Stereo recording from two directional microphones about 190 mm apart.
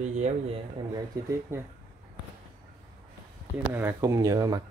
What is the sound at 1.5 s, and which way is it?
Speech, 15° right (ahead or behind).